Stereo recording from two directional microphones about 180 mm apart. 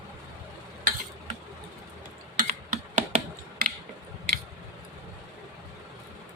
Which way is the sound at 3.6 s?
50° right (ahead or behind).